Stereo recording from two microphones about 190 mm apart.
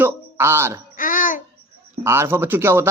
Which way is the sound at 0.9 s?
45° left (ahead or behind).